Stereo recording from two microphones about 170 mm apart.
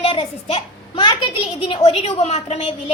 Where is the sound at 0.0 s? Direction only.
35° left (ahead or behind).